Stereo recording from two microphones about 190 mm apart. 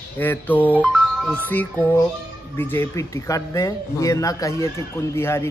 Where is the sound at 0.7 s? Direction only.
5° right (ahead or behind).